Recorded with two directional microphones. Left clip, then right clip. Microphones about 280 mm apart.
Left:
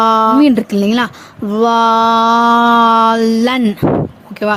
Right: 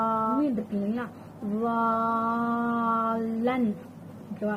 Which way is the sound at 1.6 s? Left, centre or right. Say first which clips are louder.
Left 16 dB; left.